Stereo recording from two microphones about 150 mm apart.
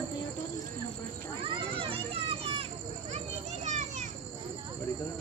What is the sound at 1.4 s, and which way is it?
Children playing, 35° right (ahead or behind).